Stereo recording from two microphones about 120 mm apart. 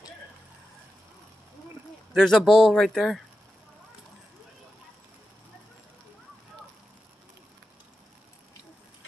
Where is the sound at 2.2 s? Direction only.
5° left (ahead or behind).